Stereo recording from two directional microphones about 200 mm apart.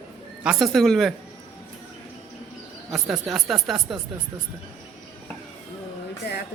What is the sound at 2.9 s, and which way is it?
Speech, centre (ahead or behind).